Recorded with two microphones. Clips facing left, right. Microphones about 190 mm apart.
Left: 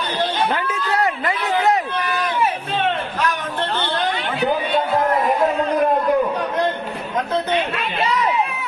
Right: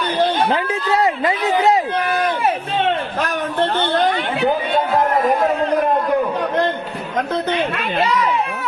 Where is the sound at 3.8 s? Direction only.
50° right (ahead or behind).